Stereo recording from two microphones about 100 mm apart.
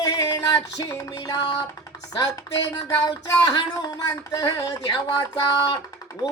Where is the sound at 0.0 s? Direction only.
40° left (ahead or behind).